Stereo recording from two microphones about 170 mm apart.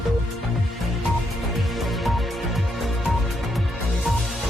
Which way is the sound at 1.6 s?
Centre (ahead or behind).